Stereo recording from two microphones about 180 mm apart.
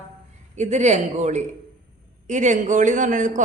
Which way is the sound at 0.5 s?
40° right (ahead or behind).